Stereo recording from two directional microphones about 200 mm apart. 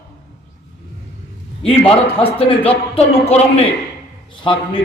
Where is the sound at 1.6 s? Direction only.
30° left (ahead or behind).